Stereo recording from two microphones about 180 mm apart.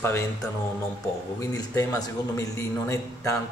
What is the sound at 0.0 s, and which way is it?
Speech, 15° left (ahead or behind).